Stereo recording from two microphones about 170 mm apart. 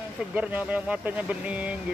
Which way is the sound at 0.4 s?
10° right (ahead or behind).